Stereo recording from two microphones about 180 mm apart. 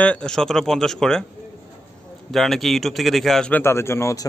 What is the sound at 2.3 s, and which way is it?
Speech, centre (ahead or behind).